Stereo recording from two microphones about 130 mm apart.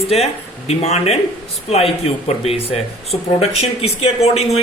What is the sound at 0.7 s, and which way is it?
Speech, 55° left (ahead or behind).